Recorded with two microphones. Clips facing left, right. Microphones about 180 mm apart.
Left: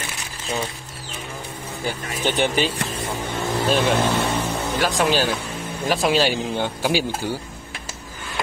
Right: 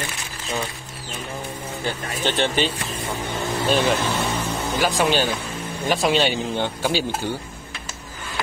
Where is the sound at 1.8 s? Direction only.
10° left (ahead or behind).